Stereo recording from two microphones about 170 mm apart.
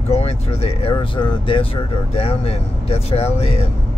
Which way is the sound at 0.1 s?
40° left (ahead or behind).